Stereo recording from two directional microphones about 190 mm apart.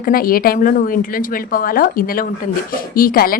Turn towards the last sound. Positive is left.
turn(degrees=50)  # may be behind; listen again after turning